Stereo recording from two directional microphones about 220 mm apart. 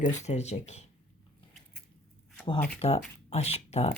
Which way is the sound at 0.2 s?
30° left (ahead or behind).